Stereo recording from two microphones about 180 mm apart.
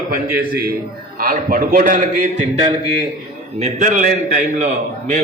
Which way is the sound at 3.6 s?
40° right (ahead or behind).